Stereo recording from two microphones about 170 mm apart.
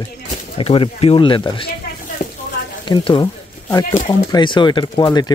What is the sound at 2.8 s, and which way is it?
Speech, 25° left (ahead or behind).